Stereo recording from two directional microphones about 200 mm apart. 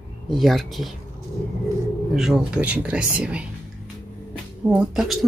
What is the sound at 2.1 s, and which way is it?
Speech, 5° right (ahead or behind).